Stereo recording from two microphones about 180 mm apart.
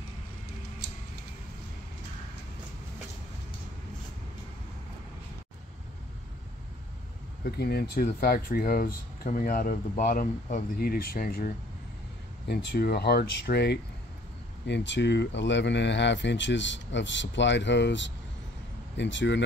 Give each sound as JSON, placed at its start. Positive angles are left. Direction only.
{"t": 7.4, "sound": "speech", "side_deg": 65}